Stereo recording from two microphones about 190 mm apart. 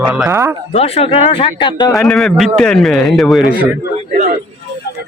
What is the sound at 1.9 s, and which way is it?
A man's voice, centre (ahead or behind).